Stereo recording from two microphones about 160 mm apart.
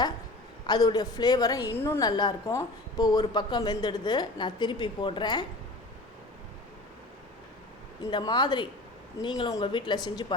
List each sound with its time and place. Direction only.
0.7 s speech: 25° left (ahead or behind)
2.0 s speech: 25° left (ahead or behind)
8.1 s speech: 30° left (ahead or behind)